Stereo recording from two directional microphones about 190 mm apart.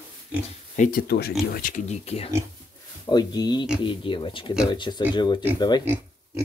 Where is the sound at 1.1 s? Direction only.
55° left (ahead or behind); by 2.3 s 35° left (ahead or behind).